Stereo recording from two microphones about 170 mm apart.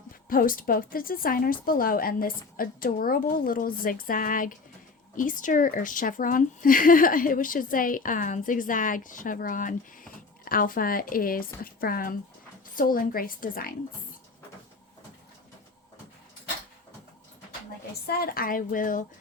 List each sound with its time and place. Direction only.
0.3 s a woman's voice: 55° left (ahead or behind)
18.0 s a woman's voice: 65° left (ahead or behind)